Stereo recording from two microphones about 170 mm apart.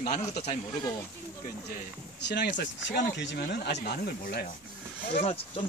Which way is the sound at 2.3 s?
85° left.